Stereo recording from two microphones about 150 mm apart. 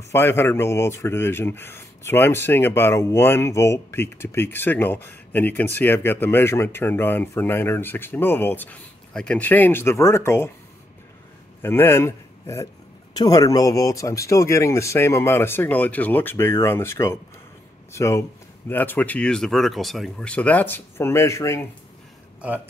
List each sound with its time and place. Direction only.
0.1 s speech: 15° left (ahead or behind)
11.6 s a man's voice: 15° left (ahead or behind)